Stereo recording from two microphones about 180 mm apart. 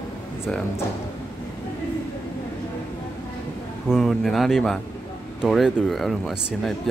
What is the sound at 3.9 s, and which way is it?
Speech, centre (ahead or behind).